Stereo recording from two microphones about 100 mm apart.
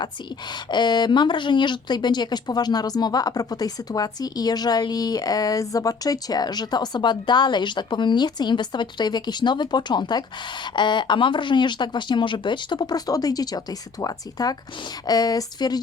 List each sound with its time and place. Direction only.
0.5 s speech: 45° left (ahead or behind)